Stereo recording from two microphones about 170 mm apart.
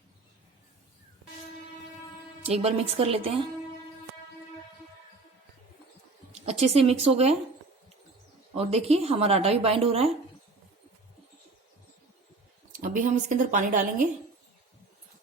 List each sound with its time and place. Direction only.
2.4 s speech: 35° right (ahead or behind)
6.4 s speech: 40° right (ahead or behind)
8.5 s speech: 40° right (ahead or behind)
12.7 s speech: 50° right (ahead or behind)